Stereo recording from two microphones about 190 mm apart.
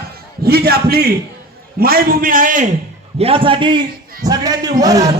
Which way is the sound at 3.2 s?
30° right (ahead or behind).